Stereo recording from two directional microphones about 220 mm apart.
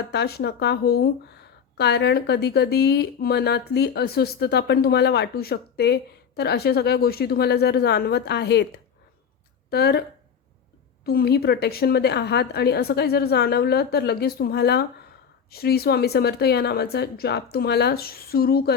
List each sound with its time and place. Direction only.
0.0 s speech: 50° left (ahead or behind)
11.0 s speech: 45° left (ahead or behind)